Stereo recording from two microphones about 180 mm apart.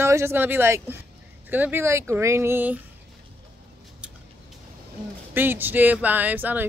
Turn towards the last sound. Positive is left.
turn(degrees=-10)  # may be behind; listen again after turning